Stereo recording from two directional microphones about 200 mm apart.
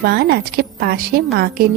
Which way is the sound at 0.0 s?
50° right (ahead or behind).